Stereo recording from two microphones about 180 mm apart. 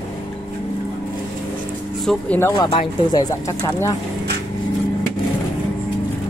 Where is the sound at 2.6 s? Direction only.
30° left (ahead or behind).